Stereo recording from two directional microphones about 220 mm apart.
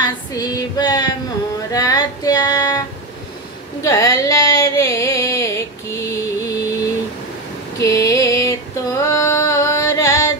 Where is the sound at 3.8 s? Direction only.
15° left (ahead or behind).